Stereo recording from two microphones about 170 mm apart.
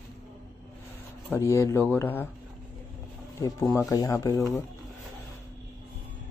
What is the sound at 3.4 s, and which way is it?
Speech, 15° left (ahead or behind).